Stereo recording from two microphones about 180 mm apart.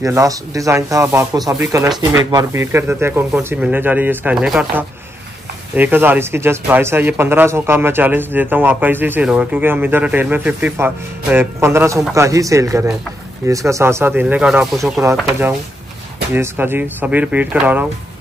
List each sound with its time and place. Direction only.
0.0 s speech: 15° right (ahead or behind)
16.3 s speech: 10° right (ahead or behind)